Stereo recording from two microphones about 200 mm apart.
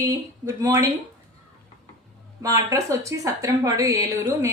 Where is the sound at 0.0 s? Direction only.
15° right (ahead or behind).